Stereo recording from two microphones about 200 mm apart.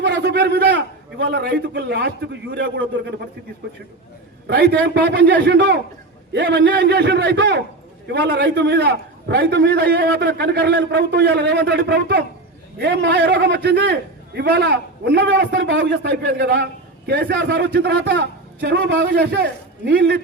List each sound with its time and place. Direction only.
0.0 s a man's voice: 60° right (ahead or behind)
4.4 s a man's voice: 55° right (ahead or behind)